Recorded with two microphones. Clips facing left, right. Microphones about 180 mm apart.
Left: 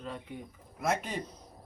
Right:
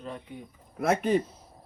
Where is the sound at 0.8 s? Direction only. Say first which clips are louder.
Right 8 dB; 65° right (ahead or behind).